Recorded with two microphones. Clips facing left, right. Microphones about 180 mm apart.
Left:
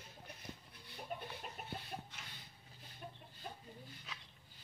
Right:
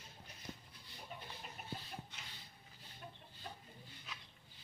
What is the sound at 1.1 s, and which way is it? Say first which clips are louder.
Chicken: left 7 dB; 50° left (ahead or behind).